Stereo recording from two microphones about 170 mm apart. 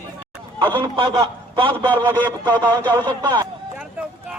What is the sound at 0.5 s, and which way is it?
A man's voice, 30° right (ahead or behind).